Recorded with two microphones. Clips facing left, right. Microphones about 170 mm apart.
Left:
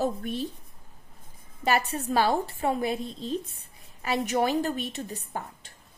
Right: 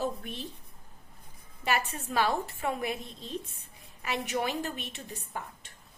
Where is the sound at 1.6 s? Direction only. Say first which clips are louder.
Left 5 dB; 35° left (ahead or behind).